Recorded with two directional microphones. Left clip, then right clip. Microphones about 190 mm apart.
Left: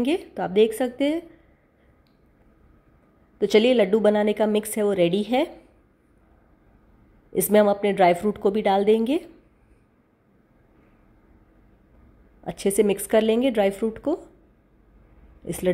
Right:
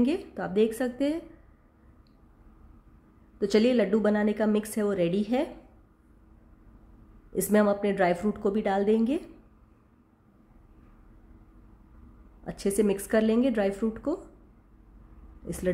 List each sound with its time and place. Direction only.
0.0 s a woman's voice: 15° left (ahead or behind)
3.3 s a woman's voice: 15° left (ahead or behind)
7.3 s a woman's voice: 15° left (ahead or behind)
12.4 s a woman's voice: 15° left (ahead or behind)
15.4 s speech: 15° left (ahead or behind)